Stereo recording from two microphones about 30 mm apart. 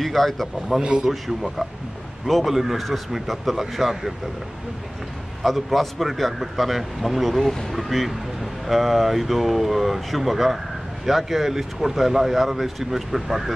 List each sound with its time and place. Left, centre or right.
0.0 s speech: centre
0.9 s a man's voice: right
2.2 s speech: centre
2.5 s a man's voice: centre
2.8 s speech: centre
5.4 s speech: centre
7.3 s speech: centre
7.7 s speech: centre